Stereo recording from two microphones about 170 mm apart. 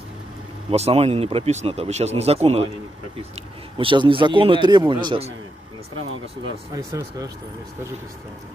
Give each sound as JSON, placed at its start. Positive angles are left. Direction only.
{"t": 0.7, "sound": "speech", "side_deg": -40}
{"t": 3.7, "sound": "a man's voice", "side_deg": -30}
{"t": 6.7, "sound": "a man's voice", "side_deg": -20}